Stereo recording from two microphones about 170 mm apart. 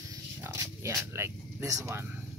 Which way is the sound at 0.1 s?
20° right (ahead or behind).